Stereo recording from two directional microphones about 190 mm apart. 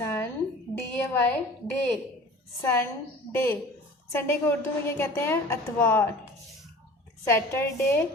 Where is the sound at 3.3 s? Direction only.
10° left (ahead or behind).